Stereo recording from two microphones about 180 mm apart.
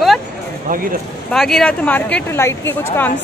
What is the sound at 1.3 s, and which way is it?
Speech, 5° left (ahead or behind).